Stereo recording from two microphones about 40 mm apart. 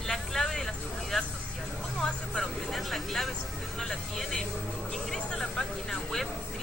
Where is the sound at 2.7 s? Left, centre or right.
Centre.